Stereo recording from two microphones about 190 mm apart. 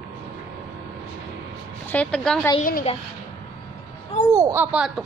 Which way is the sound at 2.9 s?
30° left (ahead or behind).